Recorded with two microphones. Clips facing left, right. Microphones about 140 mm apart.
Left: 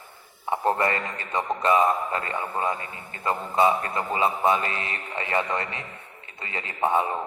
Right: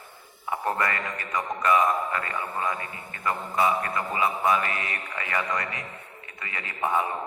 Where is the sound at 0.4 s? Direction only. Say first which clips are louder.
Left 4 dB; 30° left (ahead or behind).